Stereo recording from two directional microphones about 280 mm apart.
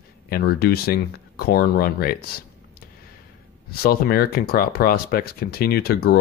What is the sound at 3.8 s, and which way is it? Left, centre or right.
Speech, left.